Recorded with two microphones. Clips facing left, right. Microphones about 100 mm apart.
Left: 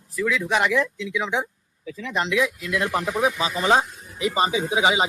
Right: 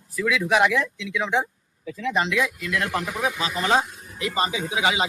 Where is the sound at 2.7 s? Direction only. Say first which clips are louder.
Left 3 dB; 15° left (ahead or behind).